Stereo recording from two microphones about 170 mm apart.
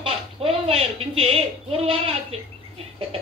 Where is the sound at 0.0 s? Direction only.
35° right (ahead or behind).